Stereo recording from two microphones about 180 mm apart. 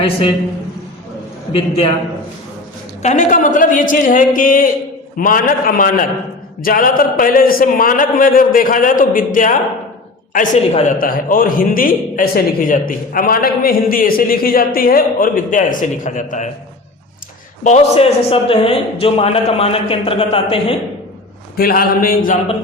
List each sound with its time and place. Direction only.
0.0 s a man's voice: 30° left (ahead or behind)
1.5 s a man's voice: 35° left (ahead or behind)
3.0 s a man's voice: 40° left (ahead or behind)
17.6 s a man's voice: 40° left (ahead or behind)
21.5 s a sound: 55° left (ahead or behind)